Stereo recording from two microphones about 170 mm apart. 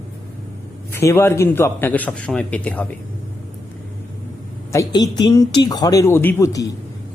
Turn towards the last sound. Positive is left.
turn(degrees=20)  # may be behind; listen again after turning